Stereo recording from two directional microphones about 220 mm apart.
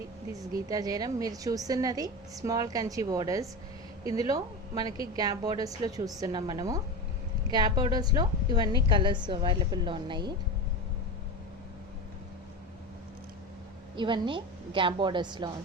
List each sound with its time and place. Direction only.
0.7 s a woman's voice: 15° right (ahead or behind)
13.9 s a woman's voice: 20° right (ahead or behind)